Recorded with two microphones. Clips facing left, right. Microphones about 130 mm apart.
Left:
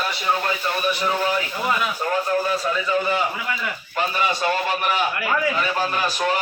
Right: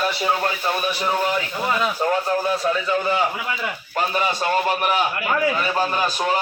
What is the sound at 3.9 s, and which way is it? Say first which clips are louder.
A man's voice: right 1 dB; 40° right (ahead or behind).